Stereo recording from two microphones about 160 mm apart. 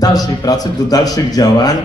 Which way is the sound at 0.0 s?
25° left (ahead or behind).